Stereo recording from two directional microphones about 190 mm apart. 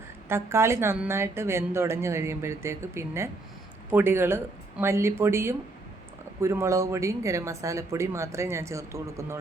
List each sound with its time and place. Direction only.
0.3 s speech: 15° right (ahead or behind)